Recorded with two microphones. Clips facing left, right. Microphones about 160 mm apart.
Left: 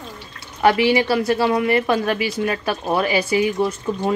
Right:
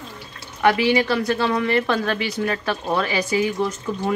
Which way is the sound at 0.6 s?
25° left (ahead or behind).